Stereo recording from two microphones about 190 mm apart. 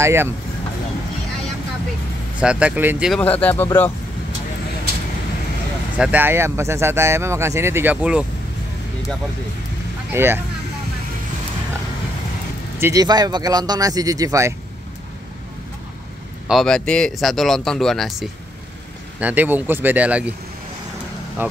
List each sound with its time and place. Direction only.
0.0 s speech: 15° right (ahead or behind)
2.4 s speech: 5° right (ahead or behind)
3.2 s speech: 10° left (ahead or behind)
5.9 s speech: 10° right (ahead or behind)
10.1 s speech: 10° right (ahead or behind)
12.8 s speech: 20° right (ahead or behind)
16.4 s speech: centre (ahead or behind)
21.4 s speech: 10° right (ahead or behind)